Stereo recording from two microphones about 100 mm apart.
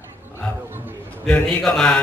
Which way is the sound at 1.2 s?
10° left (ahead or behind).